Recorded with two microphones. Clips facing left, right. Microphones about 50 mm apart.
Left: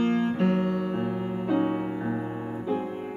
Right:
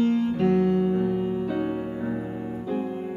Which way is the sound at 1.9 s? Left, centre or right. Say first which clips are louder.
Even; centre.